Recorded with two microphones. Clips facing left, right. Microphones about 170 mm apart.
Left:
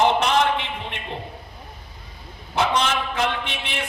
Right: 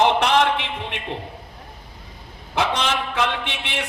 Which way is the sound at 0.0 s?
75° right (ahead or behind).